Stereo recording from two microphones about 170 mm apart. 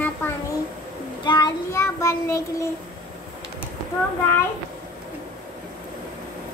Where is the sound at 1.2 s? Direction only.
25° left (ahead or behind).